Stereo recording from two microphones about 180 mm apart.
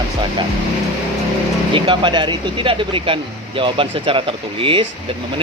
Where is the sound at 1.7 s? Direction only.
25° right (ahead or behind).